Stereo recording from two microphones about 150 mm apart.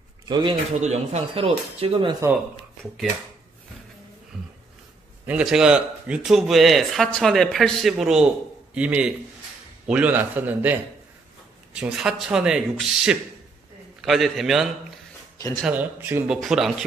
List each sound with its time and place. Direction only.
0.3 s speech: 30° right (ahead or behind)
0.7 s speech: 50° right (ahead or behind)
1.4 s speech: 35° right (ahead or behind)
4.3 s a sound: 5° right (ahead or behind)
5.2 s a man's voice: 5° right (ahead or behind)
16.3 s speech: centre (ahead or behind)